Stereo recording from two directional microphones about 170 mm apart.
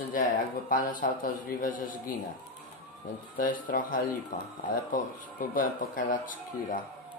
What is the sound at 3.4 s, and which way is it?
Speech, 50° left (ahead or behind).